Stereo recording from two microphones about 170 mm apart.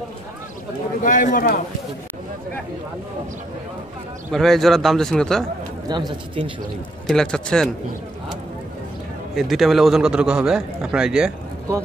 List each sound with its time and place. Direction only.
1.0 s a man's voice: 50° left (ahead or behind)
4.3 s a man's voice: centre (ahead or behind)
5.9 s speech: 25° right (ahead or behind)
7.1 s a man's voice: 5° left (ahead or behind)
9.3 s a man's voice: centre (ahead or behind)